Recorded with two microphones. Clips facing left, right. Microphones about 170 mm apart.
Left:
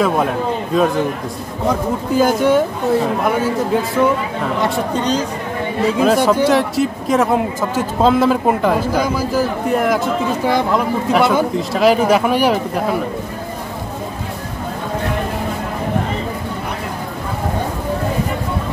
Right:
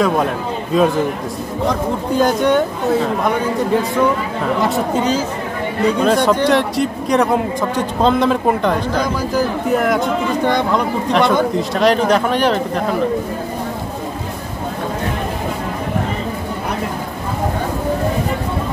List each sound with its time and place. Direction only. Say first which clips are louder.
0.7 s speech: right 2 dB; centre (ahead or behind)
5.9 s speech: even; 5° left (ahead or behind)